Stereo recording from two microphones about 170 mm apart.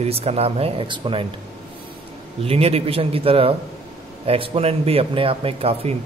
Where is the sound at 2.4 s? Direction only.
35° right (ahead or behind).